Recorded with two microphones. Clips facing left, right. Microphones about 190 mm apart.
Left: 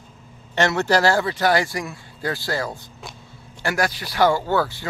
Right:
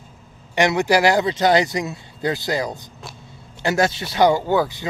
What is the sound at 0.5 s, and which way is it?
Speech, 15° right (ahead or behind).